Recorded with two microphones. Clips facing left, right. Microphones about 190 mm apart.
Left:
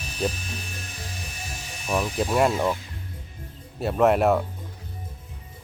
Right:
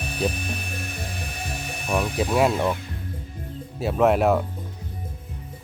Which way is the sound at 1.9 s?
Centre (ahead or behind).